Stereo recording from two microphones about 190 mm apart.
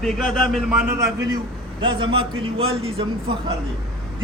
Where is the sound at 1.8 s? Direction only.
25° right (ahead or behind).